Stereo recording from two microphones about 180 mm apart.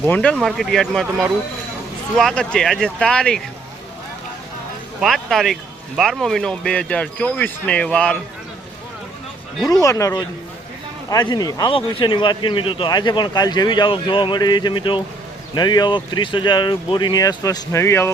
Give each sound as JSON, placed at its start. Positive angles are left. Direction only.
{"t": 0.0, "sound": "speech", "side_deg": 5}
{"t": 2.1, "sound": "speech", "side_deg": 5}
{"t": 4.9, "sound": "speech", "side_deg": 0}
{"t": 9.8, "sound": "speech", "side_deg": 15}